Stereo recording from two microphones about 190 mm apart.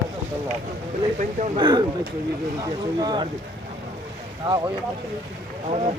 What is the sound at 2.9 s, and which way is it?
Speech, 25° right (ahead or behind).